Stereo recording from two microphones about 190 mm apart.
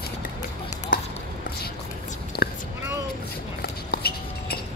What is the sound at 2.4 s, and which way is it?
Whispering, 50° left (ahead or behind).